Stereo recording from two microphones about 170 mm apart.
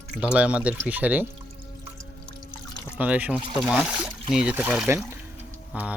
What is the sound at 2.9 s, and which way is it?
Speech, 10° right (ahead or behind).